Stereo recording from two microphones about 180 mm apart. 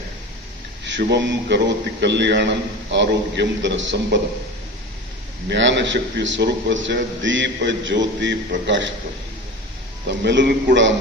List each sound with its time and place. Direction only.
0.9 s a man's voice: 80° right
5.5 s a man's voice: 85° right
10.1 s a man's voice: 75° right (ahead or behind)